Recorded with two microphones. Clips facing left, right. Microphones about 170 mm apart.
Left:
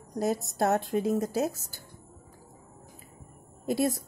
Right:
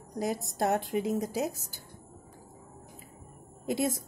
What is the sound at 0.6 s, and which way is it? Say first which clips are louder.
A woman's voice: left 1 dB; 15° right (ahead or behind).